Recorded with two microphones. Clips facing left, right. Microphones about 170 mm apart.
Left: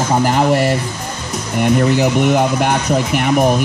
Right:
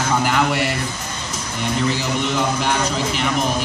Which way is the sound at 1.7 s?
55° left (ahead or behind).